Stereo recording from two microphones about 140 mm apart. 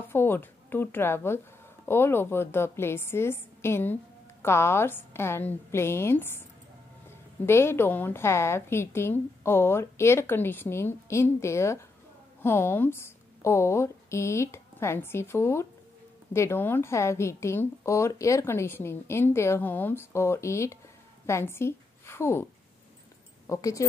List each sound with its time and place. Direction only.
0.1 s a woman's voice: 15° left (ahead or behind)